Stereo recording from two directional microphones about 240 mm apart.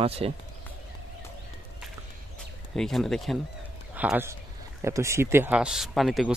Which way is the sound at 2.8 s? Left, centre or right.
Centre.